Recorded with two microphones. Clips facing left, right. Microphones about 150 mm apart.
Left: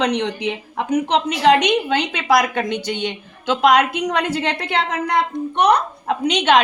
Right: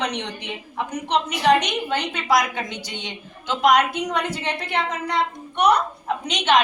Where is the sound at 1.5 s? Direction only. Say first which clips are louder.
Left 4 dB; 80° left.